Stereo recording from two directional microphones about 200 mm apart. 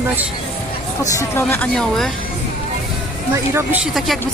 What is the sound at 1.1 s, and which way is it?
Speech, 10° left (ahead or behind).